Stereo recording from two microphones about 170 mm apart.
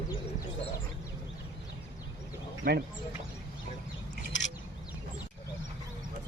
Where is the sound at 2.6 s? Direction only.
55° right (ahead or behind).